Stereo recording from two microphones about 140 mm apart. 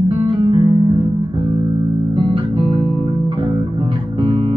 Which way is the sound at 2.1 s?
35° right (ahead or behind).